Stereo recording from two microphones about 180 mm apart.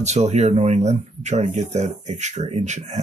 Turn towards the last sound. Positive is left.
turn(degrees=-40)  # may be behind; listen again after turning